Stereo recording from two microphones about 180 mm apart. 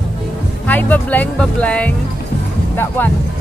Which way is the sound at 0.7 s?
10° left (ahead or behind).